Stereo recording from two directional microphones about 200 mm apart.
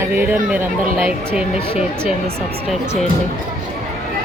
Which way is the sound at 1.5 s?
30° left (ahead or behind).